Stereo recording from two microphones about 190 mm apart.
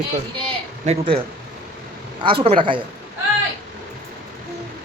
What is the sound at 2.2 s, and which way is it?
Speech, 30° right (ahead or behind).